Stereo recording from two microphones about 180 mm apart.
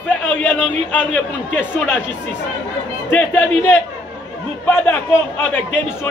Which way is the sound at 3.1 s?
10° left (ahead or behind).